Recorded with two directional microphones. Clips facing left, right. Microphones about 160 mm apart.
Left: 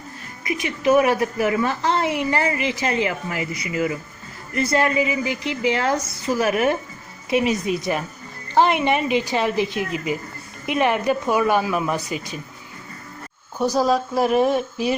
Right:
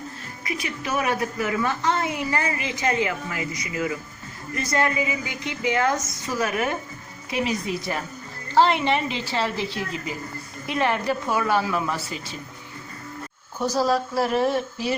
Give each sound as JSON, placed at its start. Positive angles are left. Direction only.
{"t": 0.4, "sound": "a woman's voice", "side_deg": 25}
{"t": 13.6, "sound": "speech", "side_deg": 15}